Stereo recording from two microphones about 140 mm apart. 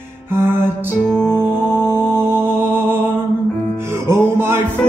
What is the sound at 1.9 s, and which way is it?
Music, 15° right (ahead or behind).